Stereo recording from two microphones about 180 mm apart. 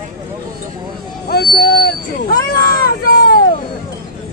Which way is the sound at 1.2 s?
60° left (ahead or behind).